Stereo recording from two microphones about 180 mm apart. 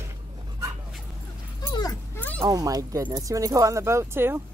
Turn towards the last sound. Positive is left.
turn(degrees=-15)  # may be behind; listen again after turning